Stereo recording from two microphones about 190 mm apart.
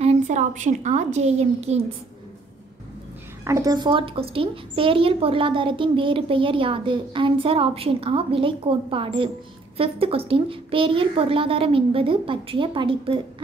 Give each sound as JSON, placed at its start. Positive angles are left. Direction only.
{"t": 0.0, "sound": "a woman's voice", "side_deg": -35}
{"t": 3.4, "sound": "a woman's voice", "side_deg": -15}